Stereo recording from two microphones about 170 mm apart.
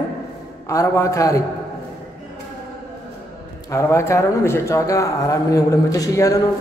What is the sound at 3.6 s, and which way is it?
Speech, 15° left (ahead or behind).